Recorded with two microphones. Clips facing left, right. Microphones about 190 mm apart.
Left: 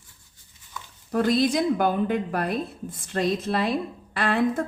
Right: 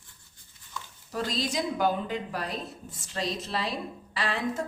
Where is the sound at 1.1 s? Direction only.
55° left (ahead or behind).